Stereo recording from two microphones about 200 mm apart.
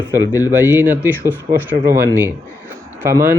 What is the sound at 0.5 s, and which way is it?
Speech, 10° right (ahead or behind).